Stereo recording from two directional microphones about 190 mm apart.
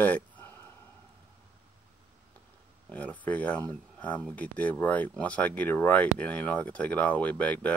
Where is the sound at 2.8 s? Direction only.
10° left (ahead or behind).